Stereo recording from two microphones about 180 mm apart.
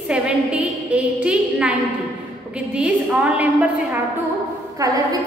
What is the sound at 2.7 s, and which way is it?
Speech, 5° right (ahead or behind).